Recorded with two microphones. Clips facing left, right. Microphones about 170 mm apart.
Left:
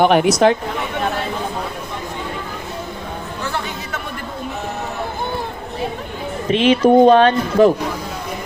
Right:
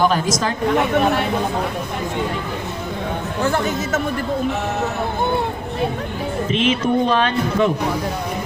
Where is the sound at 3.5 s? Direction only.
45° right (ahead or behind).